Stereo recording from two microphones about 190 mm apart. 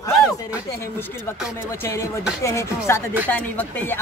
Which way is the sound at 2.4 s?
15° left (ahead or behind).